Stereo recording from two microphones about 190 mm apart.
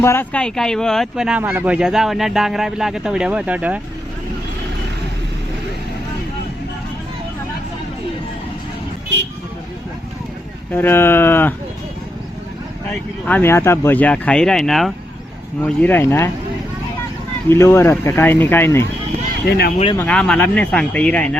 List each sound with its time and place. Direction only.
0.0 s speech: 10° left (ahead or behind); by 3.8 s 5° right (ahead or behind)
10.7 s speech: 10° left (ahead or behind)
12.9 s speech: 10° left (ahead or behind)
17.5 s speech: 15° left (ahead or behind)
19.5 s speech: 55° left (ahead or behind)
20.0 s speech: 5° left (ahead or behind)